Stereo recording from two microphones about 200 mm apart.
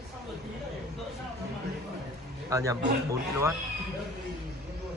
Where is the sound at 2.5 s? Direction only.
15° right (ahead or behind).